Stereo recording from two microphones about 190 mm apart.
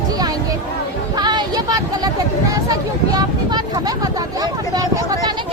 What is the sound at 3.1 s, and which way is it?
Vehicle, 20° right (ahead or behind).